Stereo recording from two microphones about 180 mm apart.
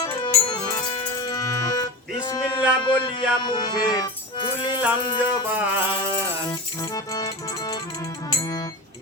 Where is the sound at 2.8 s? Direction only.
25° left (ahead or behind).